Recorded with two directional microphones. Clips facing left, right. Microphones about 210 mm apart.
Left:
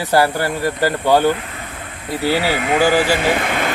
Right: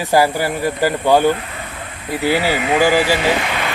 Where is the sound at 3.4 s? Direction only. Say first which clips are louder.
Left 2 dB; 50° left (ahead or behind).